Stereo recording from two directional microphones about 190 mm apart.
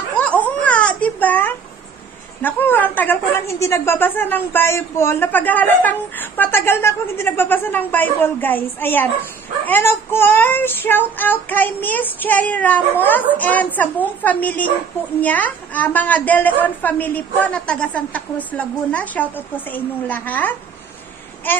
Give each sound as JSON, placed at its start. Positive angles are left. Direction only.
{"t": 0.2, "sound": "baby cry", "side_deg": 10}
{"t": 2.4, "sound": "a woman's voice", "side_deg": 10}